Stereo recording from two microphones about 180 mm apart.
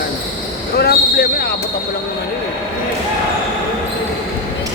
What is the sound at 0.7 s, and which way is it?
Speech, 60° left (ahead or behind).